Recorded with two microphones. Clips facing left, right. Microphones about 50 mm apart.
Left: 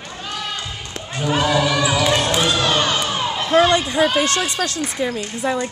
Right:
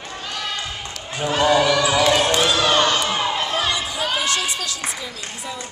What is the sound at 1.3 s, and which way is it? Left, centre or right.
Speech, centre.